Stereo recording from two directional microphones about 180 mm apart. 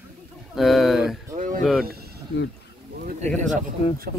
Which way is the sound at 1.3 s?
45° right (ahead or behind).